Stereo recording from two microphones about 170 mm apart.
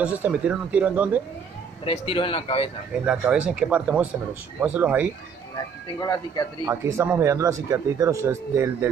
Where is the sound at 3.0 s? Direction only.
5° right (ahead or behind).